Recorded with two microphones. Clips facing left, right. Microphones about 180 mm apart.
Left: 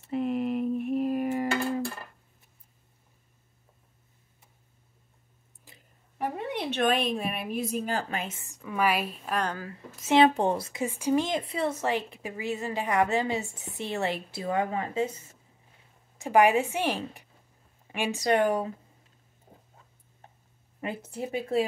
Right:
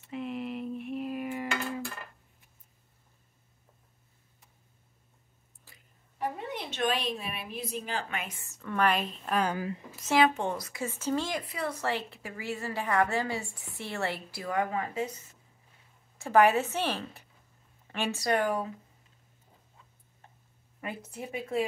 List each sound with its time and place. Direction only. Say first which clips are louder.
0.1 s a sound: left 7 dB; 45° left (ahead or behind)
5.7 s a sound: left 4 dB; 15° left (ahead or behind)
6.7 s a woman's voice: left 5 dB; 55° left (ahead or behind); by 9.5 s centre (ahead or behind)
9.5 s a woman's voice: right 4 dB; 15° right (ahead or behind)
10.0 s a woman's voice: left 4 dB; 25° left (ahead or behind)
16.2 s a woman's voice: left 1 dB; 15° left (ahead or behind)
20.8 s a woman's voice: left 5 dB; 25° left (ahead or behind)